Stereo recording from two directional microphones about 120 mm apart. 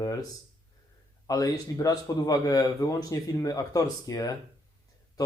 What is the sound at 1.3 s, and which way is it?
A man's voice, 30° left (ahead or behind).